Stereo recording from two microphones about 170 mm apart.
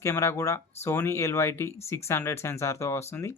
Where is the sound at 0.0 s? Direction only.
15° left (ahead or behind).